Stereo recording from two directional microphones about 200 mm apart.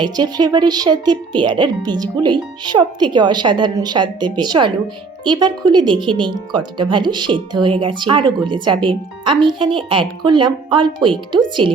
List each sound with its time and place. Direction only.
0.0 s speech: 20° right (ahead or behind)